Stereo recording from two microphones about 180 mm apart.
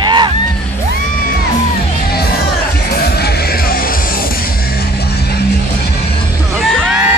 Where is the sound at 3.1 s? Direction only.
60° left (ahead or behind).